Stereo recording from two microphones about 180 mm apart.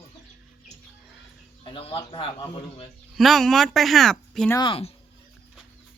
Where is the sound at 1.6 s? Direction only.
30° left (ahead or behind).